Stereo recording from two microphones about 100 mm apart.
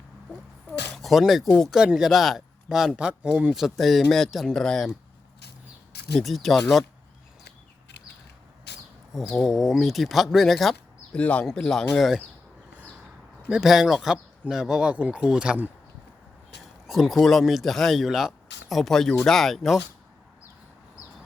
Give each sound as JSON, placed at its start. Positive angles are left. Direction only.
{"t": 0.9, "sound": "speech", "side_deg": 0}
{"t": 1.5, "sound": "speech", "side_deg": 10}
{"t": 1.7, "sound": "a man's voice", "side_deg": -5}
{"t": 6.1, "sound": "a man's voice", "side_deg": 0}
{"t": 9.3, "sound": "a man's voice", "side_deg": 0}
{"t": 11.2, "sound": "a man's voice", "side_deg": 15}
{"t": 13.5, "sound": "speech", "side_deg": -5}
{"t": 16.8, "sound": "a man's voice", "side_deg": 0}